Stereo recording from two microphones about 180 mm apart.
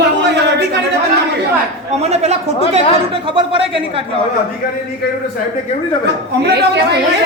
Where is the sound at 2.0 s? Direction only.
35° right (ahead or behind).